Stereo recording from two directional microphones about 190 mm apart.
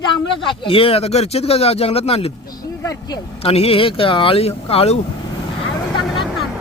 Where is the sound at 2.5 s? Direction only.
20° left (ahead or behind).